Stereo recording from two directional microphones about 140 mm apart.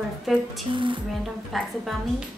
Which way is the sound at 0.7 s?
35° right (ahead or behind).